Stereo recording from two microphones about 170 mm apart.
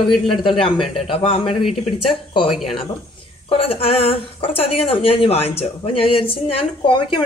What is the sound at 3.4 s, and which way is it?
A woman's voice, 35° left (ahead or behind).